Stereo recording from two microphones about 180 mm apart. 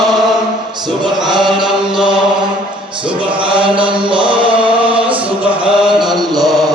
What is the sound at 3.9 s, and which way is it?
Chant, 25° right (ahead or behind).